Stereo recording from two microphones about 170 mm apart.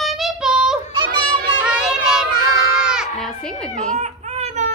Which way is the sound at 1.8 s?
5° right (ahead or behind).